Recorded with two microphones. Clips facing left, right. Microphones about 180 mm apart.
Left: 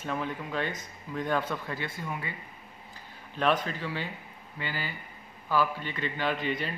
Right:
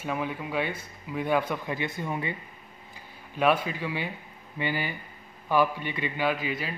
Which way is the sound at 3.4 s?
10° right (ahead or behind).